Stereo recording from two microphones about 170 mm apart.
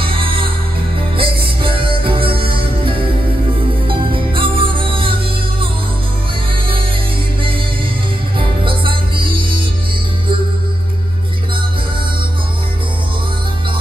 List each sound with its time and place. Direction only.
0.0 s music: 30° right (ahead or behind)
8.4 s music: 30° right (ahead or behind)